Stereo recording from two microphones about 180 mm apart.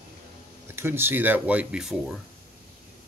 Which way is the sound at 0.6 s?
15° right (ahead or behind).